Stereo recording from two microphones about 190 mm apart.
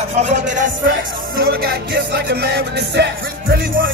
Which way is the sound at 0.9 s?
55° right (ahead or behind).